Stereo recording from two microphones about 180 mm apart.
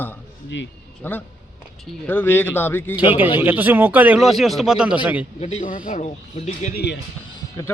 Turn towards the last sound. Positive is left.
turn(degrees=20)  # may be behind; listen again after turning